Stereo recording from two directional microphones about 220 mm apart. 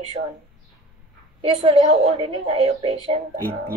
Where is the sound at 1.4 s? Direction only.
25° right (ahead or behind).